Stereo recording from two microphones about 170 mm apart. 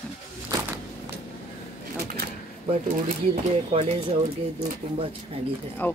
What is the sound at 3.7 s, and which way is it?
Speech, 40° right (ahead or behind).